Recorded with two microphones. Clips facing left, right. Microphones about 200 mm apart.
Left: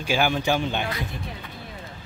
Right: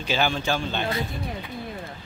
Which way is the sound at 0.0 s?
10° left (ahead or behind).